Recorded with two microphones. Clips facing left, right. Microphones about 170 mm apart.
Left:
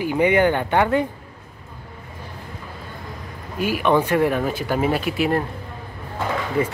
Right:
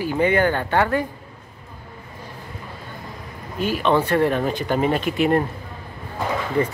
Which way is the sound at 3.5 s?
10° left (ahead or behind).